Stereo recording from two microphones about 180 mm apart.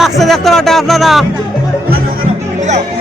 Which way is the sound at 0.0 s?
Centre (ahead or behind).